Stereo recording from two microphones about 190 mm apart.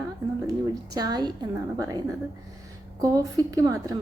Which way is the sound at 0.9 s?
20° right (ahead or behind).